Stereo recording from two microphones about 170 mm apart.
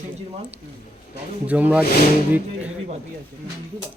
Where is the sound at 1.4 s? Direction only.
10° right (ahead or behind).